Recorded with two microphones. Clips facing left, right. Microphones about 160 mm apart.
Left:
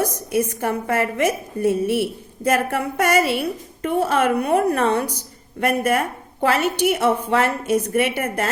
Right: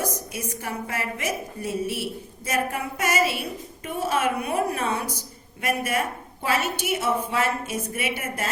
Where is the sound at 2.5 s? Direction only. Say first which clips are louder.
Left 7 dB; 65° left (ahead or behind).